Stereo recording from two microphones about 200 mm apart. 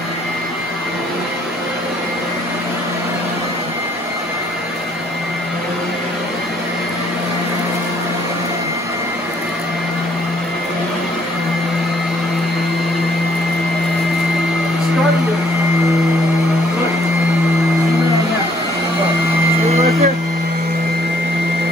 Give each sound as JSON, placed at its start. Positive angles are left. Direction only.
{"t": 19.7, "sound": "vehicle", "side_deg": -30}